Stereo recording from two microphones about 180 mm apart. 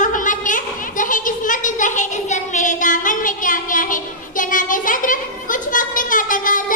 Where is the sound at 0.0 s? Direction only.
45° left (ahead or behind).